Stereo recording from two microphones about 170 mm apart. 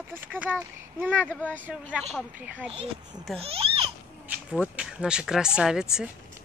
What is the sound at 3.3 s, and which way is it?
Babbling, 35° right (ahead or behind).